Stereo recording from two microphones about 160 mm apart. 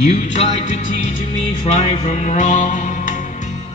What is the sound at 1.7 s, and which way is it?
Music, 45° left (ahead or behind).